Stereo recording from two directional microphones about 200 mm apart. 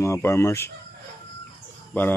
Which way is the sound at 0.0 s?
15° left (ahead or behind).